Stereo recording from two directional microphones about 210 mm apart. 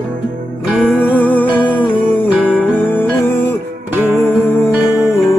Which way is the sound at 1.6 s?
20° left (ahead or behind).